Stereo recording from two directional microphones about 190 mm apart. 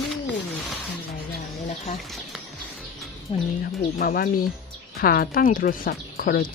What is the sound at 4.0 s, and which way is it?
Speech, 50° left (ahead or behind).